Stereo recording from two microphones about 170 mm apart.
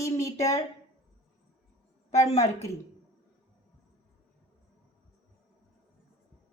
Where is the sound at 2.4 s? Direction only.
20° left (ahead or behind).